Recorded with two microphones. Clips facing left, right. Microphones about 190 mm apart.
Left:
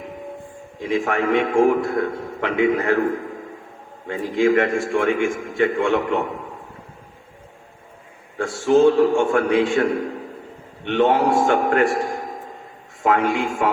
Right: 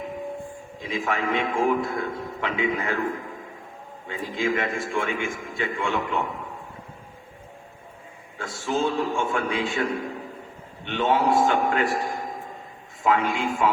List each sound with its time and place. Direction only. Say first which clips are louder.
0.8 s a man's voice: left 6 dB; 60° left (ahead or behind)
8.4 s a man's voice: left 11 dB; 45° left (ahead or behind)
13.0 s a man's voice: left 4 dB; 50° left (ahead or behind)